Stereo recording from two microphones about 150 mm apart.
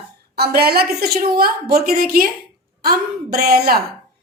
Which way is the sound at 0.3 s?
90° right.